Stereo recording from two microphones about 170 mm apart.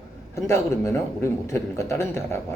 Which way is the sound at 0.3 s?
15° left (ahead or behind).